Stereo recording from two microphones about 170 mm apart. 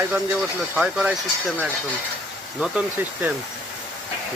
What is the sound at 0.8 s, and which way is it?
Speech, 5° right (ahead or behind).